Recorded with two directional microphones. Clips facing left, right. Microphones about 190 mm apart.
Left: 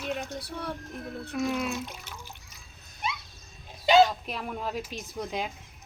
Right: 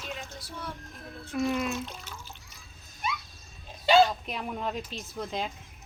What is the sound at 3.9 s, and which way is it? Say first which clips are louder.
Bow-wow: left 1 dB; 20° left (ahead or behind).